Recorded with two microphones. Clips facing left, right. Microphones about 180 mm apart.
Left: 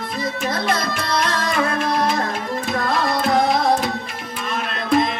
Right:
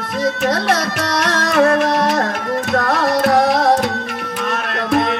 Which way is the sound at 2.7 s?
70° right (ahead or behind).